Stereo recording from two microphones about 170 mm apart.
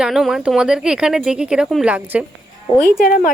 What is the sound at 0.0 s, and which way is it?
Speech, centre (ahead or behind).